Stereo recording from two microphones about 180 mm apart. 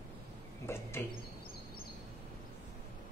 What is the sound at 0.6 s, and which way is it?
Bird, 15° left (ahead or behind).